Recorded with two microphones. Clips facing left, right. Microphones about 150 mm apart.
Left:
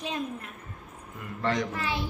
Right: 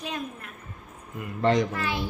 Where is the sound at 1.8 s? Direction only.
25° left (ahead or behind).